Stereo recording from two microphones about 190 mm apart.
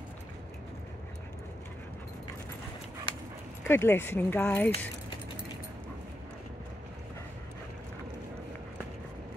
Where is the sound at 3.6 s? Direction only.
10° left (ahead or behind).